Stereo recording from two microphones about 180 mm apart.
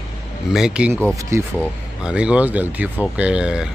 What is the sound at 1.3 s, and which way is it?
Speech, 15° right (ahead or behind).